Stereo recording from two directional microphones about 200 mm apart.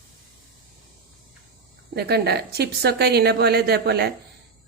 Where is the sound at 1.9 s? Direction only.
55° right (ahead or behind).